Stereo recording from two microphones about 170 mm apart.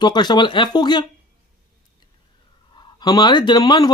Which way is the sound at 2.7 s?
25° left (ahead or behind).